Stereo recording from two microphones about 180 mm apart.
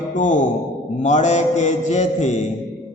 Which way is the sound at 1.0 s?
40° left (ahead or behind).